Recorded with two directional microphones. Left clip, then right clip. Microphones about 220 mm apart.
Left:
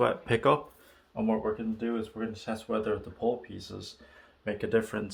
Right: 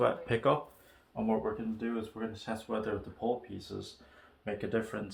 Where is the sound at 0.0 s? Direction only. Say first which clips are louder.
Left 3 dB; 45° left (ahead or behind).